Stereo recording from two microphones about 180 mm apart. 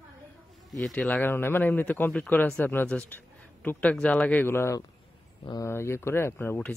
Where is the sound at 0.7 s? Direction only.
Centre (ahead or behind).